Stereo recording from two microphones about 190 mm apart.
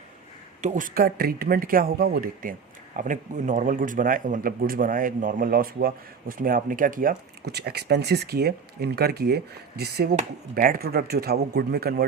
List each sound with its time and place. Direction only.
0.6 s speech: 40° right (ahead or behind)